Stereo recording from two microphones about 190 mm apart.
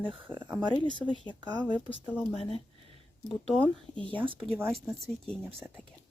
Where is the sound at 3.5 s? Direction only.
5° left (ahead or behind).